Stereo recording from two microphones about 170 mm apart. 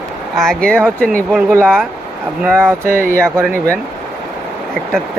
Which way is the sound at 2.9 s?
60° right (ahead or behind).